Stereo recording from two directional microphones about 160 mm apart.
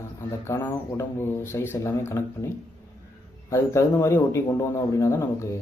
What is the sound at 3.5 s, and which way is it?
Speech, 15° left (ahead or behind).